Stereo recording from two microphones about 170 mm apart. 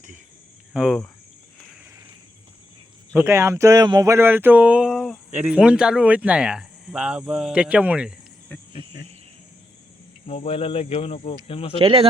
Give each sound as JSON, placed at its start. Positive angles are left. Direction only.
{"t": 0.7, "sound": "speech", "side_deg": -5}
{"t": 3.2, "sound": "speech", "side_deg": -15}
{"t": 10.2, "sound": "cricket", "side_deg": 40}
{"t": 11.8, "sound": "speech", "side_deg": -35}